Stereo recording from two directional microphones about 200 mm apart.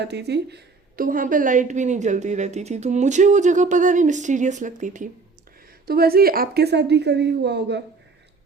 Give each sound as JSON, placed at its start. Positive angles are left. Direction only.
{"t": 0.0, "sound": "a woman's voice", "side_deg": -55}
{"t": 5.8, "sound": "a woman's voice", "side_deg": -50}